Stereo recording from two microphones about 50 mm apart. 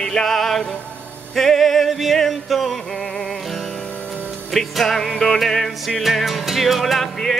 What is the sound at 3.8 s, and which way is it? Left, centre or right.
Music, left.